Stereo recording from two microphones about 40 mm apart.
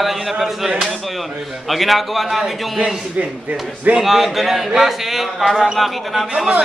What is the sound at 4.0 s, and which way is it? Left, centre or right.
Speech, centre.